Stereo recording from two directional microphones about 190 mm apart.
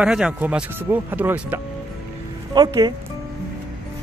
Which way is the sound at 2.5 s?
20° right (ahead or behind).